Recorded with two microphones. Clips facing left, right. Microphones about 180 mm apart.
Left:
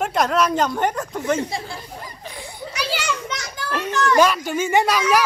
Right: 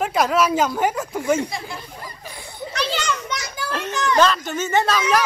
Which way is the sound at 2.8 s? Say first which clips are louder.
Right 1 dB; 10° left (ahead or behind).